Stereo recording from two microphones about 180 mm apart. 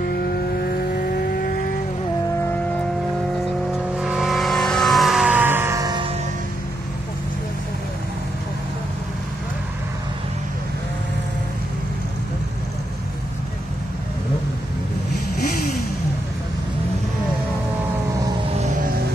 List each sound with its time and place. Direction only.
0.6 s vehicle: 55° left (ahead or behind)
3.9 s vehicle: centre (ahead or behind); by 6.1 s 25° right (ahead or behind)